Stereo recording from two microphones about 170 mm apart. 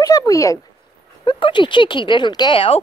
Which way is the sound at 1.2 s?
30° left (ahead or behind).